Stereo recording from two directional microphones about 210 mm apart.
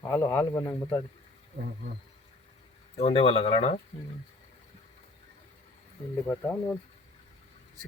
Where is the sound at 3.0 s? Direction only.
30° left (ahead or behind).